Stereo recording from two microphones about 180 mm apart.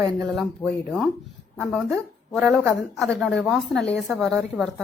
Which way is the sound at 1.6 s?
Centre (ahead or behind).